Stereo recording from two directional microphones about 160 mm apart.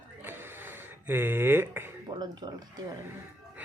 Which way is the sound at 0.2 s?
15° right (ahead or behind).